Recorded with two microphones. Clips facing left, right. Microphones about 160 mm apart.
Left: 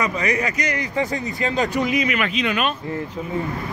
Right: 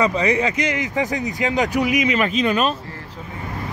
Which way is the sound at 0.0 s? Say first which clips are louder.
Right 4 dB; 30° right (ahead or behind).